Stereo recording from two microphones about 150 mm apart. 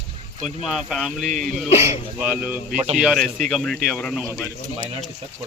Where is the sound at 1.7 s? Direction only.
45° left (ahead or behind).